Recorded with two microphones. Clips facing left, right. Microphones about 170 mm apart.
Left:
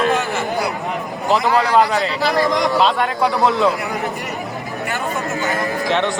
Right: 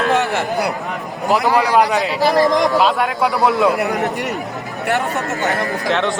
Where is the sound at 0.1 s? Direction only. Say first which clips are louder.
Right 2 dB; 65° right (ahead or behind).